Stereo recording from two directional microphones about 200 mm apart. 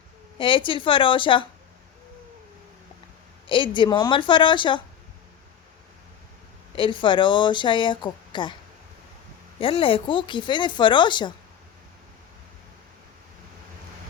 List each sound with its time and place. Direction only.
0.3 s speech: 25° left (ahead or behind)
3.5 s speech: 25° left (ahead or behind)
6.7 s speech: 25° left (ahead or behind)
9.6 s speech: 25° left (ahead or behind)